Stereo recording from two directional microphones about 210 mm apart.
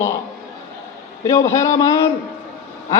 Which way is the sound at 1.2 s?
15° left (ahead or behind).